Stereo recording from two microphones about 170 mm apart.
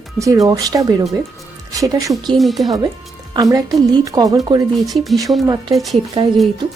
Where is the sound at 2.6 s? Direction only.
20° right (ahead or behind).